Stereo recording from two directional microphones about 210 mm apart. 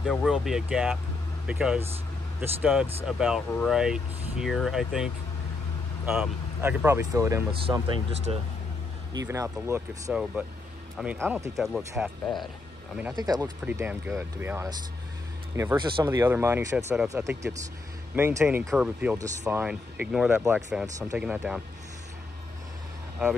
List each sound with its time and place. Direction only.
0.0 s speech: centre (ahead or behind)
7.6 s speech: 25° right (ahead or behind); by 12.4 s centre (ahead or behind)
13.1 s speech: 20° right (ahead or behind)
13.7 s speech: 10° right (ahead or behind)